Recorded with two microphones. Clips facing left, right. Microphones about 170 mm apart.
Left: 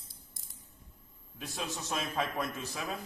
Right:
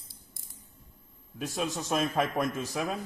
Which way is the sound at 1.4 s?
40° right (ahead or behind).